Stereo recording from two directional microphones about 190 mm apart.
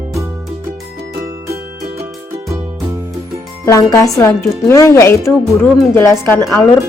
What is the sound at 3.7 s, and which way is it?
Speech, 15° left (ahead or behind).